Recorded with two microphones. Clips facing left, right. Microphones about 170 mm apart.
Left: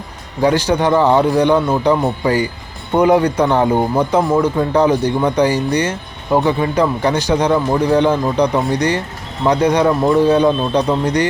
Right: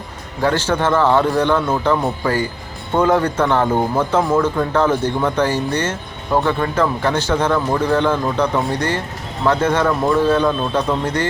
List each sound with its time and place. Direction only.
0.4 s speech: 15° left (ahead or behind)